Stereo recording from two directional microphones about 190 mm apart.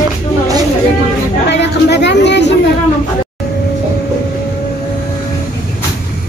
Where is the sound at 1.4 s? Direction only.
65° left (ahead or behind).